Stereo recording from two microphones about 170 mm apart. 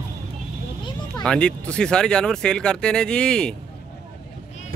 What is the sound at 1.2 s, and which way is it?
Speech, 5° left (ahead or behind).